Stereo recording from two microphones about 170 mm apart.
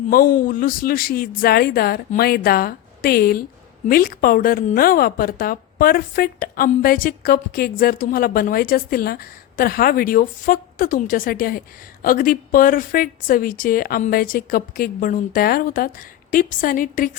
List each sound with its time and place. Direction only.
0.1 s a woman's voice: 55° left (ahead or behind)